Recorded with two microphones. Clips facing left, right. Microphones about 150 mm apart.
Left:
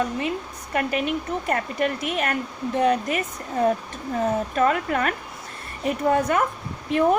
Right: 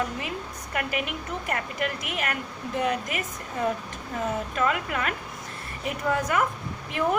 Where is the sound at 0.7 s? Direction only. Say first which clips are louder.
Left 6 dB; 35° left (ahead or behind).